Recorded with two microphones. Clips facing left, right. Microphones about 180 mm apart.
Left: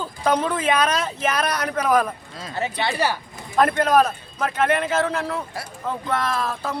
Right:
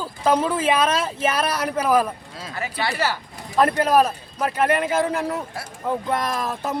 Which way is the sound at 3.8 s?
10° right (ahead or behind).